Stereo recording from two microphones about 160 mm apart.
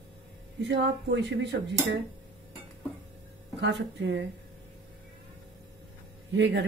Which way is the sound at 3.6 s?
90° right.